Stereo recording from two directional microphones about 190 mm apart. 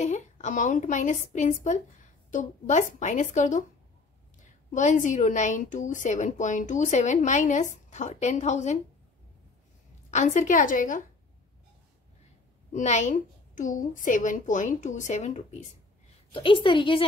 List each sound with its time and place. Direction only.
0.0 s speech: 40° left (ahead or behind)
4.6 s speech: 40° left (ahead or behind)
10.1 s a woman's voice: 40° left (ahead or behind)
12.7 s a woman's voice: 35° left (ahead or behind)